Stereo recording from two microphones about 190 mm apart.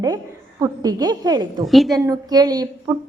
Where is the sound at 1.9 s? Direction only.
20° right (ahead or behind).